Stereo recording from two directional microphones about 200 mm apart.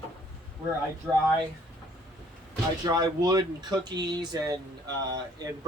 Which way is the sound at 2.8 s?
20° right (ahead or behind).